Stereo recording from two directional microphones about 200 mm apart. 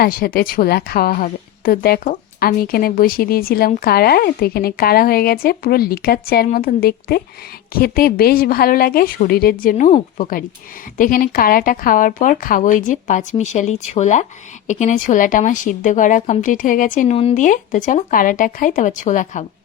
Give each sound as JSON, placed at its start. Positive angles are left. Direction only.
{"t": 0.0, "sound": "a woman's voice", "side_deg": 50}